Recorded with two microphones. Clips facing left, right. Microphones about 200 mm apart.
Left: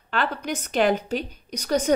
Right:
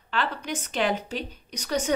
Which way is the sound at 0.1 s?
45° left (ahead or behind).